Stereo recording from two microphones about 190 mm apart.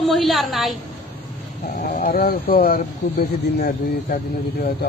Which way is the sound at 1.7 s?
45° left (ahead or behind).